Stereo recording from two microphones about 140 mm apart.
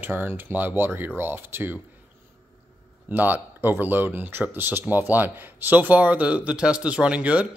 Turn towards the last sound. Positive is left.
turn(degrees=-10)  # may be behind; listen again after turning